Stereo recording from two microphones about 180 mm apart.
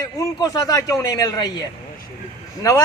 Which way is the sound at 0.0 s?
20° left (ahead or behind).